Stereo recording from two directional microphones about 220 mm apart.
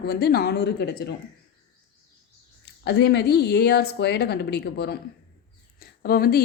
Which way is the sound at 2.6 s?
50° left (ahead or behind).